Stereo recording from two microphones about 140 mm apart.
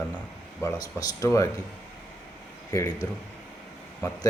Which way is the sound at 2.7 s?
25° left (ahead or behind).